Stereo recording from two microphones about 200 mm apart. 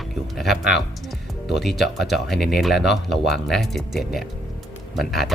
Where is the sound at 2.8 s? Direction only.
55° left (ahead or behind).